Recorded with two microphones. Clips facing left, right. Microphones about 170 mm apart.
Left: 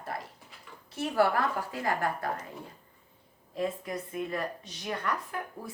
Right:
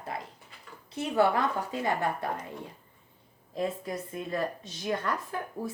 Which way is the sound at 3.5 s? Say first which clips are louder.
Right 1 dB; 30° right (ahead or behind).